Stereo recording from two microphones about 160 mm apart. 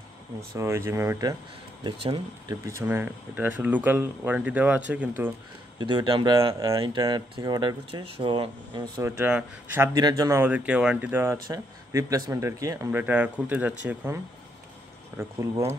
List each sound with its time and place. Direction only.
0.6 s speech: 15° right (ahead or behind)
2.0 s speech: 35° right (ahead or behind)
2.5 s speech: 20° right (ahead or behind)
5.8 s speech: 30° right (ahead or behind)
9.0 s speech: 15° right (ahead or behind)